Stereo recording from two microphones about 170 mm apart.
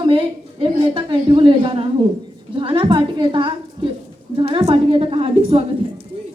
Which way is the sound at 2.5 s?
30° right (ahead or behind).